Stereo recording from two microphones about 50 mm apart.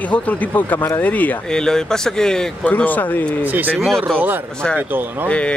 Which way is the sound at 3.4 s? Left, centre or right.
Right.